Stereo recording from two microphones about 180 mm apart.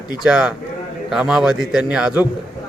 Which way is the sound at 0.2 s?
5° right (ahead or behind).